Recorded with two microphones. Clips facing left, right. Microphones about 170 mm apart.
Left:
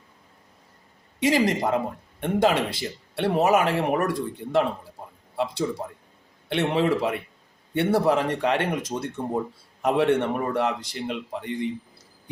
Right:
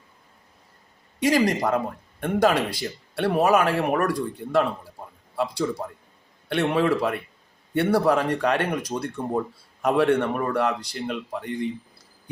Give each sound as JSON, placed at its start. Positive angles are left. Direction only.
{"t": 1.2, "sound": "speech", "side_deg": 20}
{"t": 6.5, "sound": "speech", "side_deg": 20}